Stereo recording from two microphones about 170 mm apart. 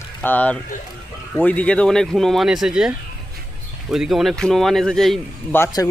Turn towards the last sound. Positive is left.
turn(degrees=10)  # may be behind; listen again after turning